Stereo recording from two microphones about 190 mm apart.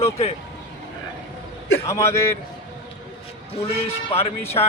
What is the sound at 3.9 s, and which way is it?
Speech, 35° left (ahead or behind).